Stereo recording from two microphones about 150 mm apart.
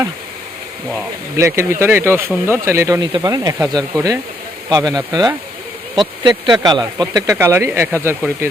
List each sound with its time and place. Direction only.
1.4 s speech: 20° right (ahead or behind)